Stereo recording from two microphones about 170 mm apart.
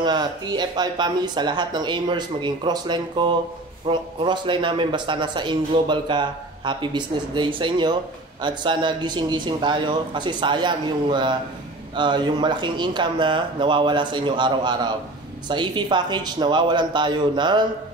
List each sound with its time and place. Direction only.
0.0 s speech: 25° right (ahead or behind)